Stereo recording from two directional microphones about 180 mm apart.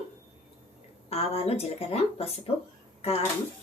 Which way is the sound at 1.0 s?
35° left (ahead or behind).